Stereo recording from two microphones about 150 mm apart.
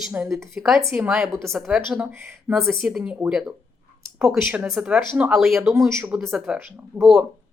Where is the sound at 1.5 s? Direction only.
5° right (ahead or behind).